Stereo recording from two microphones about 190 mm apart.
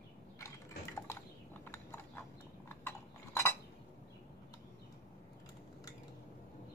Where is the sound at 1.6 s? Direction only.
10° left (ahead or behind).